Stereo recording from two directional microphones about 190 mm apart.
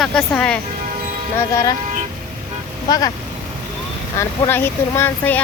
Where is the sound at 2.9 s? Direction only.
20° left (ahead or behind).